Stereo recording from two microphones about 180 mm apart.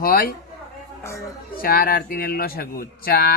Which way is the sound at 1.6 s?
55° left (ahead or behind).